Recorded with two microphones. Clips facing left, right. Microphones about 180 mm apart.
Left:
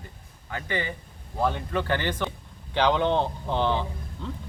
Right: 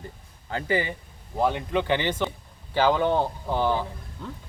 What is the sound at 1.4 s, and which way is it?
Speech, 15° right (ahead or behind).